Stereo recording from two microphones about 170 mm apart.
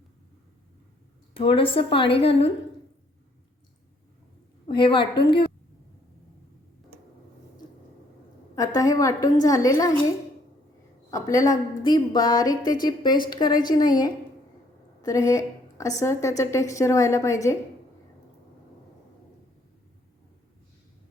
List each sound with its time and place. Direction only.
1.3 s a woman's voice: 30° left (ahead or behind)
4.7 s a woman's voice: 30° left (ahead or behind)
8.5 s a woman's voice: 20° left (ahead or behind)
11.1 s a woman's voice: 20° left (ahead or behind)